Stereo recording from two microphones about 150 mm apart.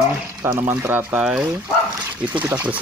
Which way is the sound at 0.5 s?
15° right (ahead or behind).